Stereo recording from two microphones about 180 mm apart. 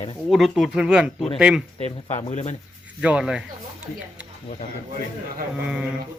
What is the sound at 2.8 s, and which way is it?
Speech, 5° right (ahead or behind).